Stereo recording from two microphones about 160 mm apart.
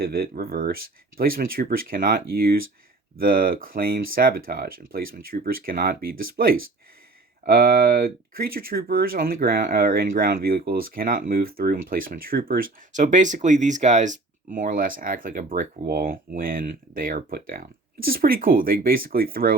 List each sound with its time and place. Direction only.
0.0 s speech: 70° right (ahead or behind)